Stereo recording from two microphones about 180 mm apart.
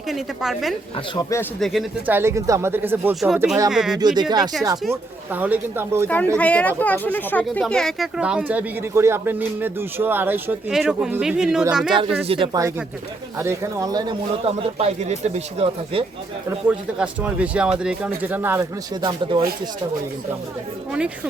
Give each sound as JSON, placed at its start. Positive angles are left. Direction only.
{"t": 0.1, "sound": "speech", "side_deg": 0}
{"t": 1.1, "sound": "speech", "side_deg": 15}
{"t": 1.5, "sound": "speech", "side_deg": 0}
{"t": 2.0, "sound": "speech", "side_deg": -15}
{"t": 3.9, "sound": "speech", "side_deg": -25}
{"t": 6.3, "sound": "speech", "side_deg": 5}
{"t": 12.3, "sound": "speech", "side_deg": -30}
{"t": 13.4, "sound": "speech", "side_deg": -15}
{"t": 14.4, "sound": "speech", "side_deg": -35}
{"t": 16.6, "sound": "speech", "side_deg": -5}
{"t": 19.0, "sound": "speech", "side_deg": -25}